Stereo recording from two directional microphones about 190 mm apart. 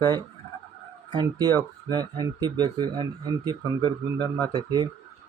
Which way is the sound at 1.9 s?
20° right (ahead or behind).